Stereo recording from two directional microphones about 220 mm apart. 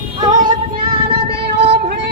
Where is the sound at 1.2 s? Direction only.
45° right (ahead or behind).